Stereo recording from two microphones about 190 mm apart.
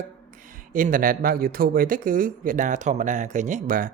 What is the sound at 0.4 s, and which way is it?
Speech, 45° right (ahead or behind).